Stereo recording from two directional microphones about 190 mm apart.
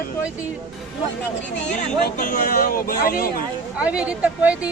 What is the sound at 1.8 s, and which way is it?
Speech, 45° left (ahead or behind).